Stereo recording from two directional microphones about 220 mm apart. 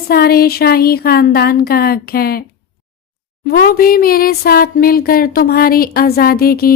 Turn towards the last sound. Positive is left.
turn(degrees=45)  # may be behind; listen again after turning